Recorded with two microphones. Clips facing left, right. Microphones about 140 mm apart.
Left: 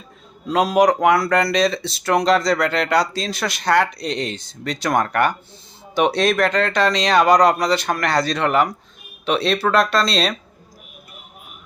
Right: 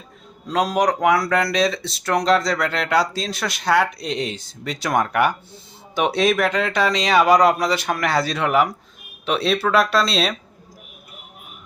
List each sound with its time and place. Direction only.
0.4 s speech: 5° left (ahead or behind)